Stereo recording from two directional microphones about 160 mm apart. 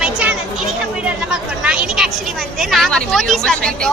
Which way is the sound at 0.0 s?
10° right (ahead or behind).